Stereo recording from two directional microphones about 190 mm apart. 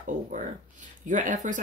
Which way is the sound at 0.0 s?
45° right (ahead or behind).